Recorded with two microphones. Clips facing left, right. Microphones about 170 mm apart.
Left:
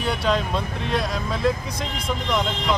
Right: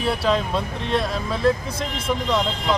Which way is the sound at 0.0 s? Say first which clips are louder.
Right 2 dB; centre (ahead or behind).